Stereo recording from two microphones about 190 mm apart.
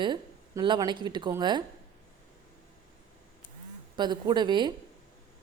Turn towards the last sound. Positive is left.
turn(degrees=-25)  # may be behind; listen again after turning